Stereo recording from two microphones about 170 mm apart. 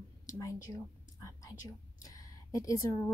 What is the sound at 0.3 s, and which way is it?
A woman's voice, 20° left (ahead or behind).